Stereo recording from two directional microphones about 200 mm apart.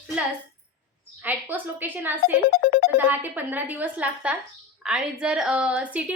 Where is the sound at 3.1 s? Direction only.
10° right (ahead or behind).